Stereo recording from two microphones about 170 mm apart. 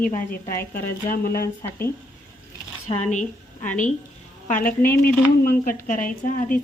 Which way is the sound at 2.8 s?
40° left (ahead or behind).